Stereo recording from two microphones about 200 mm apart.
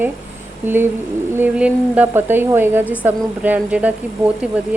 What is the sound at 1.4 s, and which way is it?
Speech, 5° right (ahead or behind).